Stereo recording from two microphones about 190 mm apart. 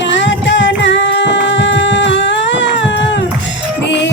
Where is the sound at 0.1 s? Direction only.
75° left (ahead or behind).